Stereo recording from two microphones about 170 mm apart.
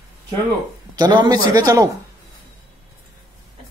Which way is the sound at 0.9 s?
25° right (ahead or behind).